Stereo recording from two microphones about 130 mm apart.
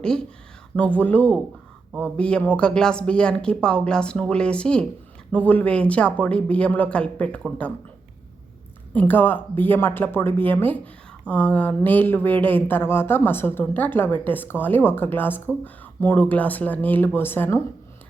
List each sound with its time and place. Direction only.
0.0 s speech: 5° left (ahead or behind)
8.9 s speech: 15° left (ahead or behind)